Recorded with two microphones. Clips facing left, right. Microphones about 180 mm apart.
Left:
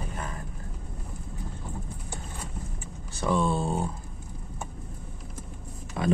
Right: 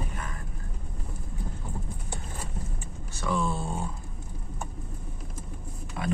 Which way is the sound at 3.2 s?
25° left (ahead or behind).